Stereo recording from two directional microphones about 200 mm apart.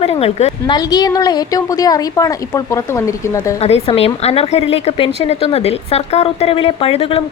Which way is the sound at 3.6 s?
30° left (ahead or behind).